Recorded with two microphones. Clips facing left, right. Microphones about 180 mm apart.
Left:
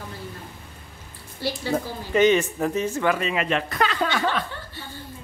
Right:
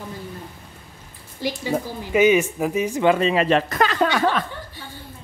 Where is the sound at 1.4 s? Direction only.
15° right (ahead or behind); by 4.1 s 45° right (ahead or behind).